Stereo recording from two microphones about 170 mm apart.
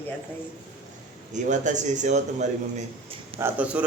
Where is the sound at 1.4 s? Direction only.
45° right (ahead or behind).